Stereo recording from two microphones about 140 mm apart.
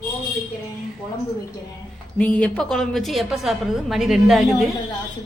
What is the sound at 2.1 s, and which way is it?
A woman's voice, 10° left (ahead or behind).